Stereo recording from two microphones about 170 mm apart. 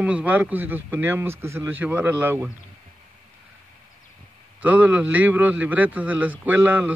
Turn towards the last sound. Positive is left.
turn(degrees=-10)  # may be behind; listen again after turning